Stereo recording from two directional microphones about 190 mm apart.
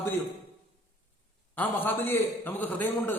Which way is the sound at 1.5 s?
10° left (ahead or behind).